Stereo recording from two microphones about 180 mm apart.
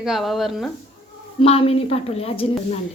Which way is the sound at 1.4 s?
35° left (ahead or behind).